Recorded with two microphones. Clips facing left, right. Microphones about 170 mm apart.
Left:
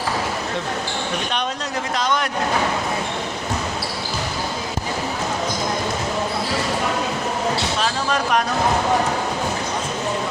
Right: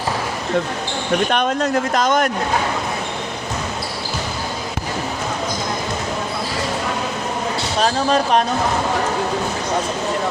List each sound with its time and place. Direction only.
1.3 s speech: 55° right (ahead or behind)
7.8 s speech: 35° right (ahead or behind)